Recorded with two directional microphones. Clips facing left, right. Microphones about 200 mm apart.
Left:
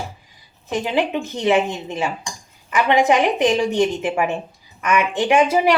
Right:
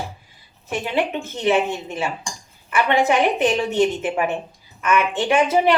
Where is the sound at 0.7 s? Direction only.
15° left (ahead or behind).